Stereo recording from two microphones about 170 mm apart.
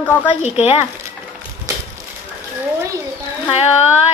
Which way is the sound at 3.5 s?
40° left (ahead or behind).